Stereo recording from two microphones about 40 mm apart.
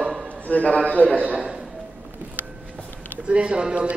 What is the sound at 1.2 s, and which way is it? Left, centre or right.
Speech, right.